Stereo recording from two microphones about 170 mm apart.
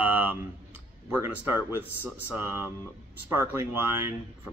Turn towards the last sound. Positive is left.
turn(degrees=-15)  # may be behind; listen again after turning